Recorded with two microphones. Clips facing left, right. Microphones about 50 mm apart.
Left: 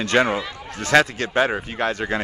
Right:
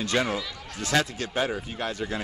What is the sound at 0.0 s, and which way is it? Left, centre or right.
Speech, left.